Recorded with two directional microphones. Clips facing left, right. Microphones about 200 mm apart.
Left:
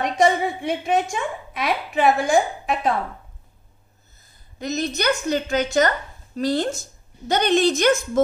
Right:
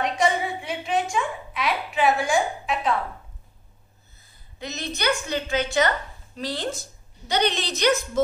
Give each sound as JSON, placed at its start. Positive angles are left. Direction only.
{"t": 0.0, "sound": "a woman's voice", "side_deg": 45}
{"t": 4.6, "sound": "a woman's voice", "side_deg": 45}